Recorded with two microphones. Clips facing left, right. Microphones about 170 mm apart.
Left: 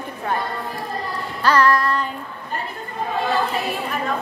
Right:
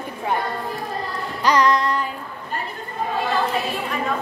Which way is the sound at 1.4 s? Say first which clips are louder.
Left 1 dB; 15° right (ahead or behind).